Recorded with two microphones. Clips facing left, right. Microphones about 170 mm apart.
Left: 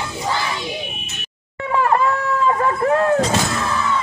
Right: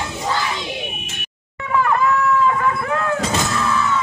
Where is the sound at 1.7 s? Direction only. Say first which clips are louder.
Even; 35° left (ahead or behind).